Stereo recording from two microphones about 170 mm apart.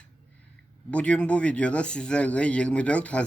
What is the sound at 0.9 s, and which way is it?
Speech, 5° left (ahead or behind).